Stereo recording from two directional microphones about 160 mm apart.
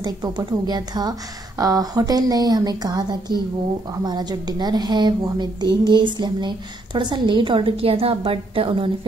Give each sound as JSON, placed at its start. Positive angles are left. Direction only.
{"t": 0.0, "sound": "a woman's voice", "side_deg": -25}